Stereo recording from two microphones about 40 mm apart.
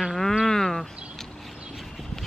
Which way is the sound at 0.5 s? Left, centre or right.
Centre.